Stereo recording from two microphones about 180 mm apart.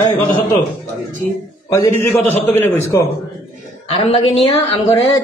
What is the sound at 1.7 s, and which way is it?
A man's voice, 15° left (ahead or behind).